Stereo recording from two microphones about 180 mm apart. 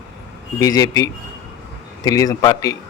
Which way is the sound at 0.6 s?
20° left (ahead or behind).